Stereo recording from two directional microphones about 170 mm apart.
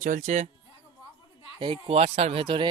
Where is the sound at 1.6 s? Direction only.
30° right (ahead or behind).